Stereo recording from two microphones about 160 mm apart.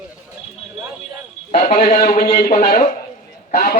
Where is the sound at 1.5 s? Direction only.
60° left (ahead or behind).